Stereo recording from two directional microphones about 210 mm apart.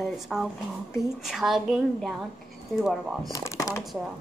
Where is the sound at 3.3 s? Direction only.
15° left (ahead or behind).